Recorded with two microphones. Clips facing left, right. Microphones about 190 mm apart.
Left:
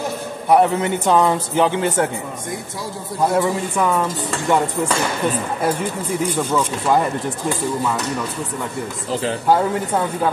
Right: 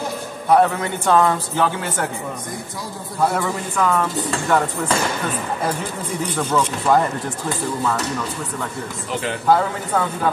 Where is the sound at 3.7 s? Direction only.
15° left (ahead or behind).